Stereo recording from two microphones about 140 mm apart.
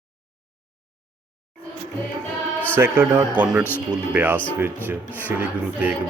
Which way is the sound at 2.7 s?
15° right (ahead or behind).